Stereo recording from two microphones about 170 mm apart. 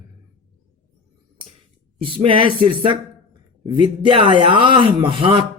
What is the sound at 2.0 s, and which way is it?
A man's voice, 30° right (ahead or behind).